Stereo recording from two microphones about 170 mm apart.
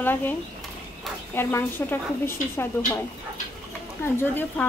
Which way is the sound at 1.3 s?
15° left (ahead or behind).